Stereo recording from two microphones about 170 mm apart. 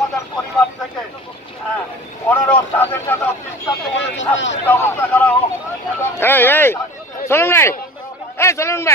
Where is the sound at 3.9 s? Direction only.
90° left.